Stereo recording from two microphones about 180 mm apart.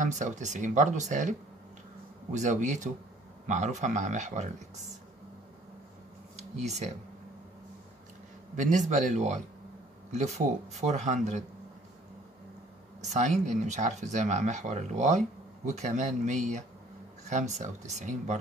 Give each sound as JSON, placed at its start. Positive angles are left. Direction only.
{"t": 0.0, "sound": "speech", "side_deg": -45}
{"t": 2.3, "sound": "speech", "side_deg": -40}
{"t": 6.3, "sound": "a sound", "side_deg": -40}
{"t": 8.5, "sound": "speech", "side_deg": -45}
{"t": 13.1, "sound": "speech", "side_deg": -40}